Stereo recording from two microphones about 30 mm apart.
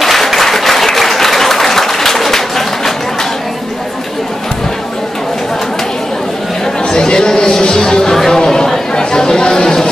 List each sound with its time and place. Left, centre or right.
0.0 s applause: centre
6.9 s a sound: left
8.3 s chatter: left